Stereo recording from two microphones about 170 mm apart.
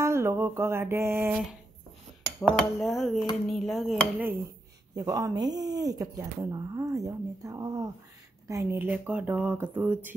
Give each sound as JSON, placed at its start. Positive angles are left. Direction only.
{"t": 0.0, "sound": "mantra", "side_deg": -15}
{"t": 2.4, "sound": "speech", "side_deg": 0}
{"t": 4.9, "sound": "speech", "side_deg": -20}